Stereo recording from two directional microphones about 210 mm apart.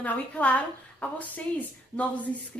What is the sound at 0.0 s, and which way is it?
Speech, 5° left (ahead or behind).